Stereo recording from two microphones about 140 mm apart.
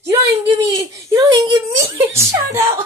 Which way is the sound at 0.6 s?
20° right (ahead or behind).